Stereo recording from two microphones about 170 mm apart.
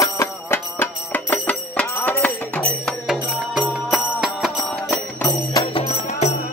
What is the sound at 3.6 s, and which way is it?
Music, 5° right (ahead or behind).